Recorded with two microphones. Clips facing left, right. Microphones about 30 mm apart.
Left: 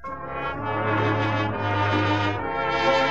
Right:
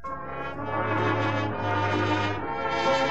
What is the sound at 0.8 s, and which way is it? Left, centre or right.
Brass instrument, centre.